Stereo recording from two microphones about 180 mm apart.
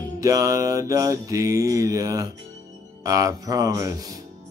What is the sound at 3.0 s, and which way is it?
Speech, 20° right (ahead or behind).